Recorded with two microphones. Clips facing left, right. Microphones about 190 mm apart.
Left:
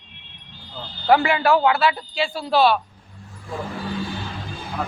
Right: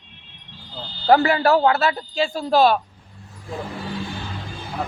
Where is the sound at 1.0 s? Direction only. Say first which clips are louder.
Right 1 dB; 40° right (ahead or behind).